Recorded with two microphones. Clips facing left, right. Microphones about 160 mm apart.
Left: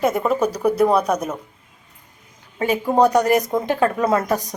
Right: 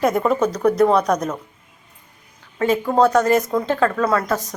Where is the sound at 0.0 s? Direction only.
5° left (ahead or behind).